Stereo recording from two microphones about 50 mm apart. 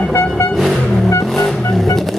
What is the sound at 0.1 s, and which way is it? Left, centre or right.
Music, left.